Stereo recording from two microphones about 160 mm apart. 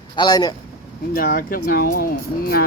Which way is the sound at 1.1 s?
70° left (ahead or behind).